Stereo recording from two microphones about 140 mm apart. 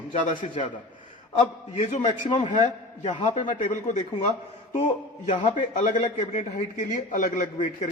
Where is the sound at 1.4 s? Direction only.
55° left (ahead or behind).